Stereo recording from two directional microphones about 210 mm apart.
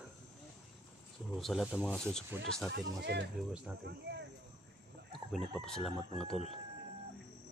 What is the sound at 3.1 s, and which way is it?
Speech, 50° right (ahead or behind).